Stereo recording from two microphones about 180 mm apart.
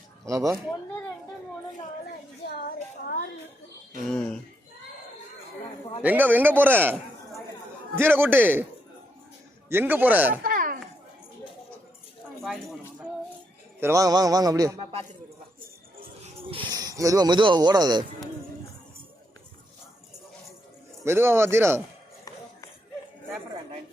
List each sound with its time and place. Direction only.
0.3 s speech: 15° right (ahead or behind)
4.1 s speech: 5° left (ahead or behind)
6.0 s speech: 10° right (ahead or behind)
9.6 s speech: 10° right (ahead or behind)
10.4 s a sound: 50° right (ahead or behind)
12.5 s speech: centre (ahead or behind)
13.7 s a sound: 15° right (ahead or behind)
16.2 s speech: 30° right (ahead or behind)
21.0 s speech: 15° right (ahead or behind)